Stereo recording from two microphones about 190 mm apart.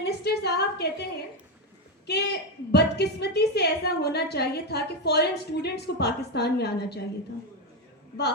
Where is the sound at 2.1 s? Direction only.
60° left (ahead or behind).